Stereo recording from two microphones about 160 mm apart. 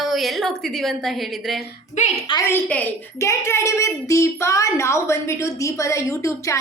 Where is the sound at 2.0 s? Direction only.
50° left (ahead or behind).